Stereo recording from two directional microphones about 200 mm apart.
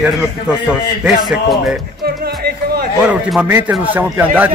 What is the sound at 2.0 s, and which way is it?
Music, 50° right (ahead or behind).